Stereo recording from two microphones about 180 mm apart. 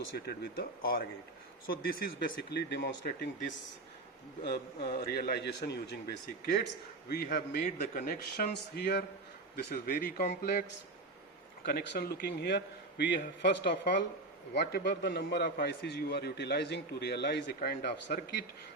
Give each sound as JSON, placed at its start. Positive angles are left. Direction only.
{"t": 0.3, "sound": "a man's voice", "side_deg": 60}
{"t": 4.4, "sound": "a man's voice", "side_deg": 55}
{"t": 11.6, "sound": "a man's voice", "side_deg": 60}